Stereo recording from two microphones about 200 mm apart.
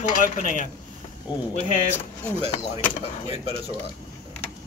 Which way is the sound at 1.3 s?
20° left (ahead or behind).